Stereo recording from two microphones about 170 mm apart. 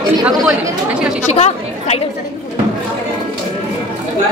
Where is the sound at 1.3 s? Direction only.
40° left (ahead or behind).